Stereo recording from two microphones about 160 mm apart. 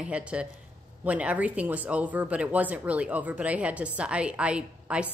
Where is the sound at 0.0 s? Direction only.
5° right (ahead or behind).